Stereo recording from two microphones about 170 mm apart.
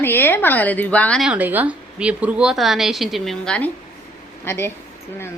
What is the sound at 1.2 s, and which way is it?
A woman's voice, 10° right (ahead or behind).